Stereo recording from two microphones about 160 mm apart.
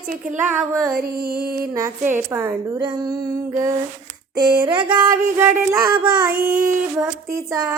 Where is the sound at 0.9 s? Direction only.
75° right (ahead or behind).